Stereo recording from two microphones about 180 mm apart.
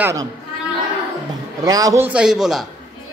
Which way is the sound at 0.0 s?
15° right (ahead or behind).